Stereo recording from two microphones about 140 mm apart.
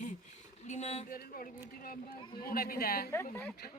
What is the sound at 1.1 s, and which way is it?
Speech, 90° left.